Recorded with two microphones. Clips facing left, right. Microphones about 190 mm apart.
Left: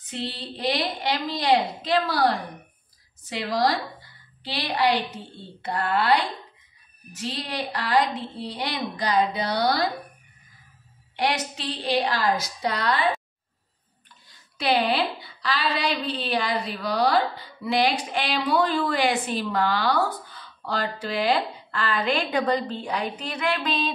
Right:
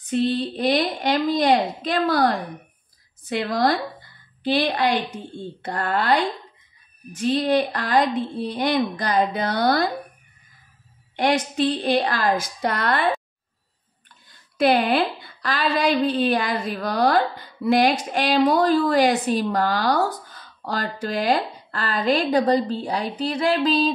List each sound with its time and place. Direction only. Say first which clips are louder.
0.0 s a woman's voice: right 11 dB; 50° right (ahead or behind)
3.3 s a woman's voice: right 3 dB; 55° right (ahead or behind)
11.1 s a woman's voice: right 6 dB; 50° right (ahead or behind)
14.6 s a woman's voice: right 4 dB; 50° right (ahead or behind); by 23.9 s 35° right (ahead or behind)